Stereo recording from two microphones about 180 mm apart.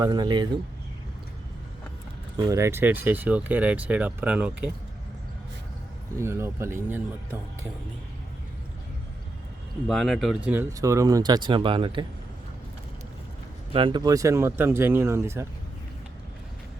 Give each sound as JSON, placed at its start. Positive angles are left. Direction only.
{"t": 0.0, "sound": "speech", "side_deg": -20}
{"t": 2.4, "sound": "speech", "side_deg": -15}
{"t": 6.1, "sound": "speech", "side_deg": -15}
{"t": 9.8, "sound": "speech", "side_deg": 0}
{"t": 13.7, "sound": "speech", "side_deg": -25}